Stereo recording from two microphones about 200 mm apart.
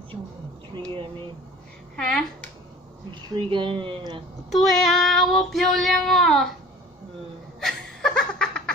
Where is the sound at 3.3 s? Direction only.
25° right (ahead or behind).